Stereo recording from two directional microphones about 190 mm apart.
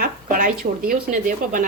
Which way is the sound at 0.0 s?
45° right (ahead or behind).